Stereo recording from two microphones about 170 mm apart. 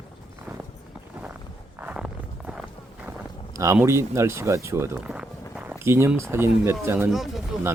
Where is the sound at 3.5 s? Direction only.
15° right (ahead or behind).